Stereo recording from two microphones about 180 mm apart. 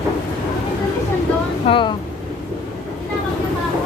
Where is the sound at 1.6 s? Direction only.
30° left (ahead or behind).